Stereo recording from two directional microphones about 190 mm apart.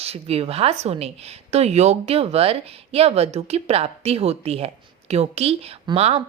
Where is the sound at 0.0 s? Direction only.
30° right (ahead or behind).